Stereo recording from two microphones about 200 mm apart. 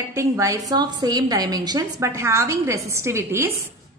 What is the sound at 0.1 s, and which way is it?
A woman's voice, 15° right (ahead or behind).